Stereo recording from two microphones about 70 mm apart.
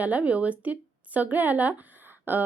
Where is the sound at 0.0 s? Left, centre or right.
Right.